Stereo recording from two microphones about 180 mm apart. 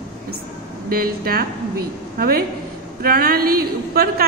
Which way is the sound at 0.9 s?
55° right (ahead or behind).